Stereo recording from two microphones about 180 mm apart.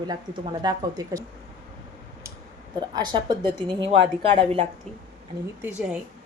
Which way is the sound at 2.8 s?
25° right (ahead or behind).